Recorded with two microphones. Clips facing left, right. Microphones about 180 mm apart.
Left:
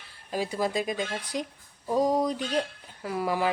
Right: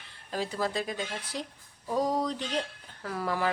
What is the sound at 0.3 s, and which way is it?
Speech, 10° left (ahead or behind).